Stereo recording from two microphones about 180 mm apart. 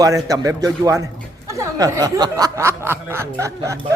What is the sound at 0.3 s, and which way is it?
Speech, 20° right (ahead or behind).